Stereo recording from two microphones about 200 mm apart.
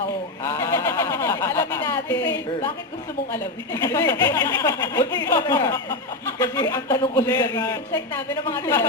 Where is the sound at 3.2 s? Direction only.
10° left (ahead or behind).